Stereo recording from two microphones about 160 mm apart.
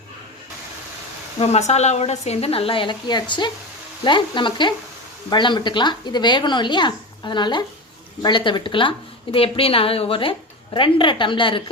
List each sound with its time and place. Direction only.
1.4 s a woman's voice: 45° left (ahead or behind)